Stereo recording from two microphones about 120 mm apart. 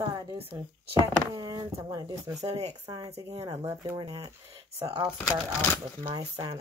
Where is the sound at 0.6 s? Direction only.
30° right (ahead or behind).